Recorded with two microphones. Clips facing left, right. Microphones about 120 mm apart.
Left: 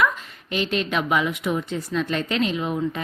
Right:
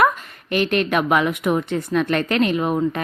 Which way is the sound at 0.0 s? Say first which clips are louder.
Right 5 dB; 55° right (ahead or behind).